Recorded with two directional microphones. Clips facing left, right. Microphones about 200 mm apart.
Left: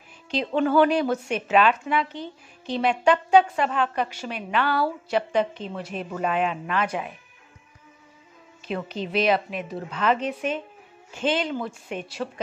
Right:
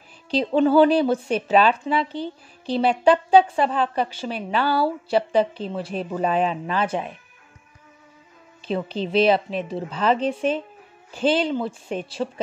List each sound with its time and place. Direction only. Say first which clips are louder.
0.3 s speech: right 4 dB; 30° right (ahead or behind)
8.6 s speech: right 4 dB; 30° right (ahead or behind)